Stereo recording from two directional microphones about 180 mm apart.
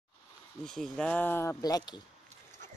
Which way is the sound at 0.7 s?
Centre (ahead or behind).